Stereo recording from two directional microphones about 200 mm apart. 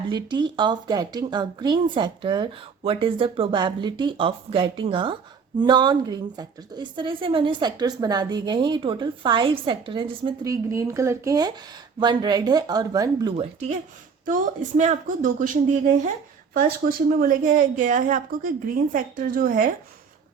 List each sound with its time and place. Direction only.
0.1 s a woman's voice: 20° right (ahead or behind); by 19.7 s 45° right (ahead or behind)